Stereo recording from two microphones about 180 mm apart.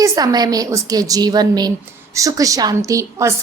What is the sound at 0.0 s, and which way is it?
A woman's voice, 20° right (ahead or behind).